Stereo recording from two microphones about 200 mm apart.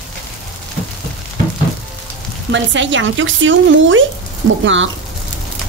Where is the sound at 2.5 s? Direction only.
65° right (ahead or behind).